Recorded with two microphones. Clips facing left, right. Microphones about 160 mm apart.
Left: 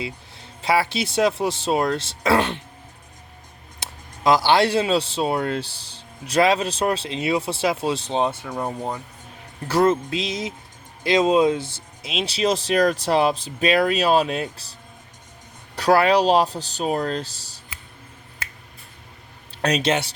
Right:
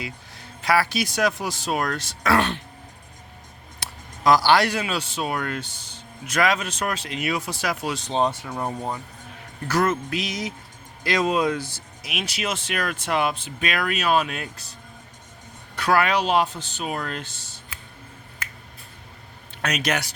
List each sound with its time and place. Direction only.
0.6 s speech: 25° left (ahead or behind)
3.8 s speech: 20° left (ahead or behind)
9.6 s speech: 30° left (ahead or behind)
19.6 s speech: 30° left (ahead or behind)